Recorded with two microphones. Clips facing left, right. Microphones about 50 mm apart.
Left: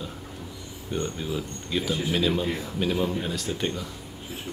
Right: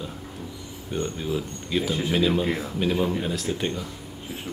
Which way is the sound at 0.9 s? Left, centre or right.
Centre.